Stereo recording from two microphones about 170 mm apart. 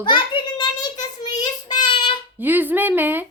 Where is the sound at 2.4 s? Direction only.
10° right (ahead or behind).